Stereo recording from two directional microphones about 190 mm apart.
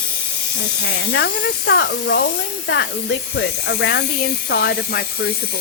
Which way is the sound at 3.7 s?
60° left (ahead or behind).